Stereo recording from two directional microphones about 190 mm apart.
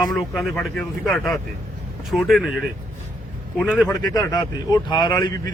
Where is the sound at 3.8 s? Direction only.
20° left (ahead or behind).